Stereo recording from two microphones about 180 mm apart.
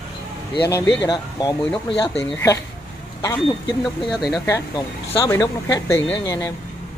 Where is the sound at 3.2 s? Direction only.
25° left (ahead or behind).